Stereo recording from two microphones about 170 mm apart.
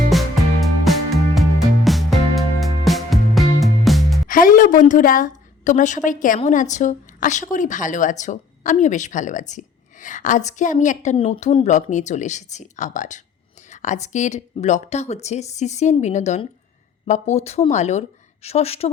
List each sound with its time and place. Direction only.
0.1 s music: centre (ahead or behind)
4.3 s a sound: 55° left (ahead or behind)
6.1 s a woman's voice: 50° left (ahead or behind)